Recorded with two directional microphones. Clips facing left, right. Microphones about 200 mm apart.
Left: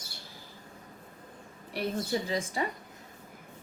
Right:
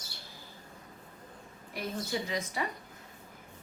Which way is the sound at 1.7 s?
30° left (ahead or behind).